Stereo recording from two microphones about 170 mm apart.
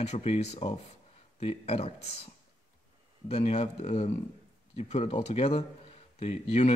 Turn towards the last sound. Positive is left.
turn(degrees=40)  # may be behind; listen again after turning